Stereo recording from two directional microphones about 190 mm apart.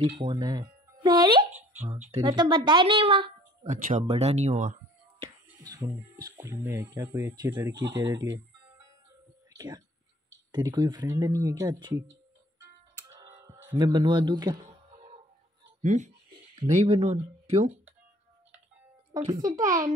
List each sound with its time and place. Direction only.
0.0 s speech: 25° right (ahead or behind)
3.7 s speech: 40° right (ahead or behind)
5.2 s music: 20° right (ahead or behind)
5.9 s speech: 20° right (ahead or behind)
13.2 s music: 20° right (ahead or behind)
13.7 s speech: 20° right (ahead or behind)
15.8 s speech: 40° right (ahead or behind)
19.1 s speech: 20° right (ahead or behind)